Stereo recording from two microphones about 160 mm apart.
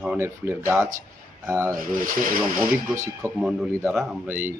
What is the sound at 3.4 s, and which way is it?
Speech, 5° right (ahead or behind).